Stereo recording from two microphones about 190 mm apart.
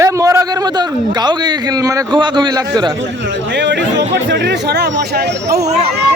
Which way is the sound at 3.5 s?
65° right (ahead or behind).